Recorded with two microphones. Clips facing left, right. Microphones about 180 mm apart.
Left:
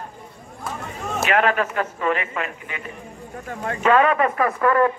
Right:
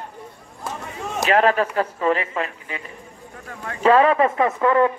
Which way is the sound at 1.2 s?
35° right (ahead or behind).